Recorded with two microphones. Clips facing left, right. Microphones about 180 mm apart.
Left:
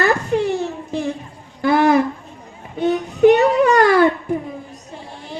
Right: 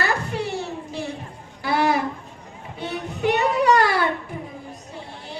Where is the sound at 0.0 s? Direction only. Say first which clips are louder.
Left 8 dB; 50° left (ahead or behind).